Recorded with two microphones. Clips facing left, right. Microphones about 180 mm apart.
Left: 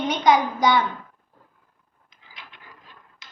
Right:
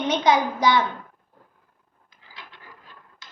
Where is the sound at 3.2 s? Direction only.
20° left (ahead or behind).